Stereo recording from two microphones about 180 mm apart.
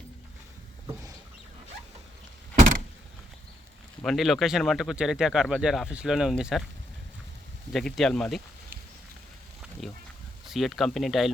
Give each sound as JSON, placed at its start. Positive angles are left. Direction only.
{"t": 2.6, "sound": "vehicle", "side_deg": -45}
{"t": 4.0, "sound": "speech", "side_deg": 0}
{"t": 7.7, "sound": "speech", "side_deg": 0}
{"t": 9.8, "sound": "a sound", "side_deg": 0}
{"t": 10.4, "sound": "speech", "side_deg": 0}